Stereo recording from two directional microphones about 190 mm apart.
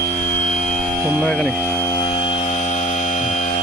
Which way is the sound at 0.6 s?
5° left (ahead or behind).